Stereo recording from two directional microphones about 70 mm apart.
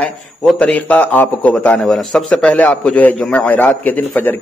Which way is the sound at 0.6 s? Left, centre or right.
Centre.